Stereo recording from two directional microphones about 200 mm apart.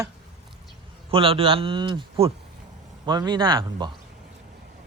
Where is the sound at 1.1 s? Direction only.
25° right (ahead or behind).